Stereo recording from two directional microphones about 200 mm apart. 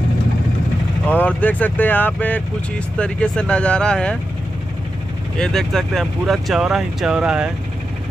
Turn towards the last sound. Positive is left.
turn(degrees=-5)  # may be behind; listen again after turning